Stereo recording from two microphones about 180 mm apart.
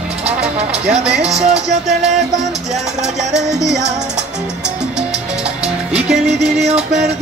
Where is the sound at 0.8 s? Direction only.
5° right (ahead or behind).